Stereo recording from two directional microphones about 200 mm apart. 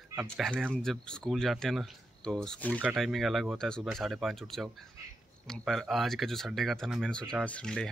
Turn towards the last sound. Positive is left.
turn(degrees=5)  # may be behind; listen again after turning